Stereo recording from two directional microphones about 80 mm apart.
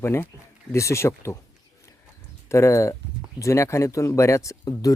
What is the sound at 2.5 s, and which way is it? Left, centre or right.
Speech, left.